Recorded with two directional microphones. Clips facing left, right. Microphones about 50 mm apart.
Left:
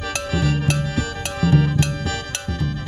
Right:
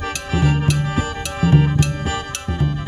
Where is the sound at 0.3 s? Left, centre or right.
Right.